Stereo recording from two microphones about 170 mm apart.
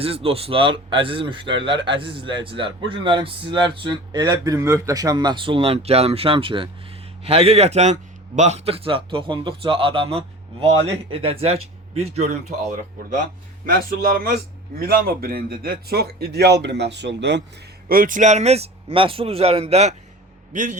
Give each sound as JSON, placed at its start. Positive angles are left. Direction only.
{"t": 0.0, "sound": "a man's voice", "side_deg": -35}
{"t": 17.8, "sound": "a man's voice", "side_deg": -55}